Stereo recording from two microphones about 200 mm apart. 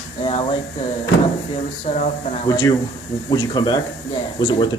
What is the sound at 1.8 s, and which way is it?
Speech, 35° left (ahead or behind).